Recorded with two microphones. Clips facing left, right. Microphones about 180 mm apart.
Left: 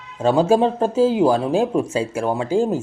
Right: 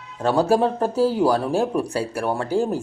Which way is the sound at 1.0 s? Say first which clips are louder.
Left 3 dB; 20° left (ahead or behind).